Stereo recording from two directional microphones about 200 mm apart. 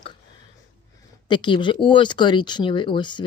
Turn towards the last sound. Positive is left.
turn(degrees=25)  # may be behind; listen again after turning